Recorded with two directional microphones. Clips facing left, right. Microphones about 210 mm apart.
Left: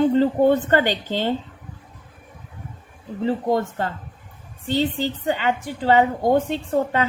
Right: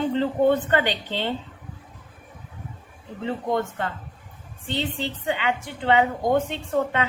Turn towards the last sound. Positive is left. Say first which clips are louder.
# left 3 dB
turn(degrees=40)  # may be behind; listen again after turning